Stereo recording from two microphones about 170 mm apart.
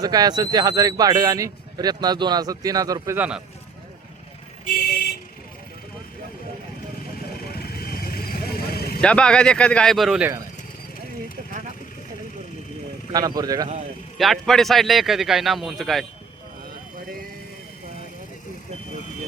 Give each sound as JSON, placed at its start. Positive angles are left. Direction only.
{"t": 0.0, "sound": "speech", "side_deg": -25}
{"t": 3.2, "sound": "speech", "side_deg": -5}
{"t": 7.5, "sound": "vehicle", "side_deg": 60}
{"t": 9.0, "sound": "speech", "side_deg": 5}
{"t": 13.1, "sound": "speech", "side_deg": -20}
{"t": 14.2, "sound": "speech", "side_deg": 0}